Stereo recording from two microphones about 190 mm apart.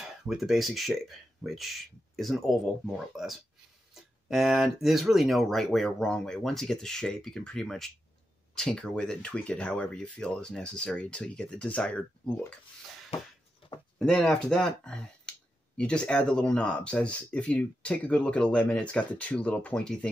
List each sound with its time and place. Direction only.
0.0 s speech: centre (ahead or behind)
13.9 s speech: centre (ahead or behind)